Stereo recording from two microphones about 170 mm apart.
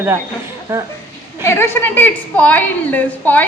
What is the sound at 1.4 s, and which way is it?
A woman's voice, 15° left (ahead or behind).